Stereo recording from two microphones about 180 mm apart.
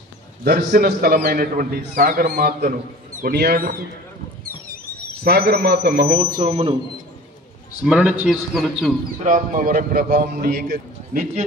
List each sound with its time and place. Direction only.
0.4 s a man's voice: 60° right (ahead or behind)
5.2 s a man's voice: 60° right (ahead or behind)
6.4 s speech: 35° right (ahead or behind)
7.8 s a man's voice: 5° right (ahead or behind)
9.2 s a man's voice: 50° right (ahead or behind)